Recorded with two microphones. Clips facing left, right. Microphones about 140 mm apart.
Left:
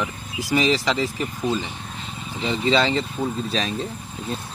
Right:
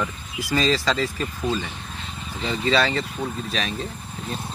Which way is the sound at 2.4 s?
20° left (ahead or behind).